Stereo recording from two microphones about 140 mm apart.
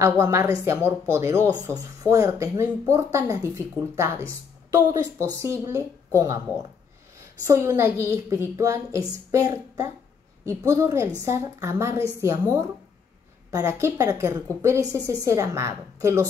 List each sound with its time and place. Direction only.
0.0 s speech: 20° right (ahead or behind)
7.4 s speech: 20° right (ahead or behind)